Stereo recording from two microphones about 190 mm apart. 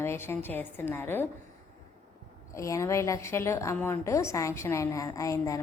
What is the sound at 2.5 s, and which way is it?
A woman's voice, 15° left (ahead or behind).